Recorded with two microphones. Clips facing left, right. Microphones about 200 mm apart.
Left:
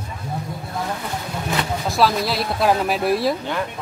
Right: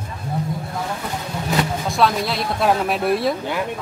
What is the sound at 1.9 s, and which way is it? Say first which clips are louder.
Speech: left 2 dB; centre (ahead or behind).